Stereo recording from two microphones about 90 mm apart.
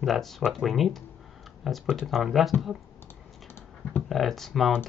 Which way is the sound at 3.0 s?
25° left (ahead or behind).